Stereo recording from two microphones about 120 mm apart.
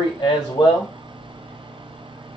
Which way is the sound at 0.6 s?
45° left (ahead or behind).